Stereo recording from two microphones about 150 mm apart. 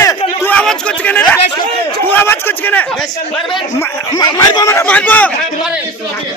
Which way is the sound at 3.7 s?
25° left (ahead or behind).